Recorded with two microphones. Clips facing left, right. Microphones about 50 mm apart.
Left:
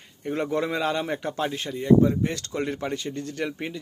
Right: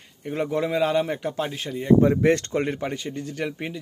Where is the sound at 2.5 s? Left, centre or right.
Centre.